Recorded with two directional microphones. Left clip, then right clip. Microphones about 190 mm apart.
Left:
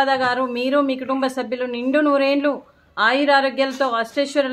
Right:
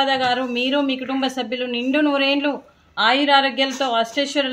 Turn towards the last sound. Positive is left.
turn(degrees=15)  # may be behind; listen again after turning